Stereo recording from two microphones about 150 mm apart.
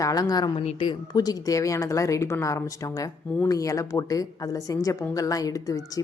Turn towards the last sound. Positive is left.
turn(degrees=20)  # may be behind; listen again after turning